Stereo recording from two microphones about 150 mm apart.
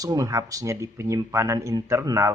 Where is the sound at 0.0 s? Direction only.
20° right (ahead or behind).